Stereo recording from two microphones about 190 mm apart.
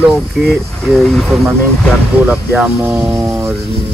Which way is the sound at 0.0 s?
5° right (ahead or behind).